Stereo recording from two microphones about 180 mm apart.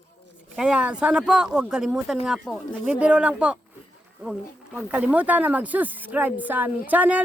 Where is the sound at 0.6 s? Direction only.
5° right (ahead or behind).